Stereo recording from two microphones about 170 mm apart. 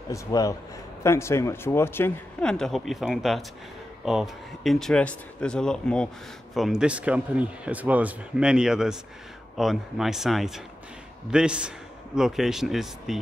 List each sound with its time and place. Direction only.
0.1 s a man's voice: 20° left (ahead or behind); by 13.2 s centre (ahead or behind)